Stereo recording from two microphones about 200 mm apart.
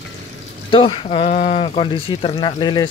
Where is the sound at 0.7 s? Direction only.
25° left (ahead or behind).